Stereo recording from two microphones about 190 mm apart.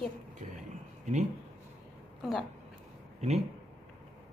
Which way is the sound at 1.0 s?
40° right (ahead or behind).